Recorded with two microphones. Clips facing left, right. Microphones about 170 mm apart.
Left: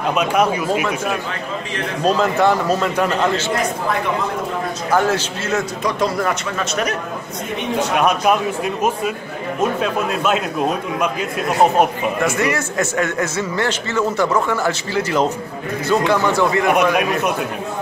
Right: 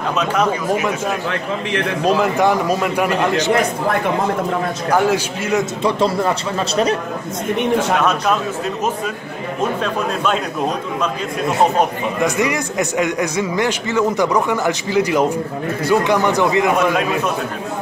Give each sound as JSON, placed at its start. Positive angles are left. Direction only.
{"t": 0.1, "sound": "a man's voice", "side_deg": 10}
{"t": 2.0, "sound": "a man's voice", "side_deg": -10}
{"t": 4.9, "sound": "a man's voice", "side_deg": -10}
{"t": 5.9, "sound": "a man's voice", "side_deg": -30}
{"t": 8.0, "sound": "a man's voice", "side_deg": 15}
{"t": 12.2, "sound": "a man's voice", "side_deg": -15}
{"t": 16.7, "sound": "a man's voice", "side_deg": 15}